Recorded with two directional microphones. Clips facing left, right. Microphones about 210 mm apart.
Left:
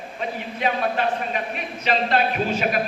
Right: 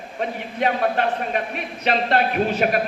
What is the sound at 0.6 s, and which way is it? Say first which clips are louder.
A man's voice: right 2 dB; 55° right (ahead or behind).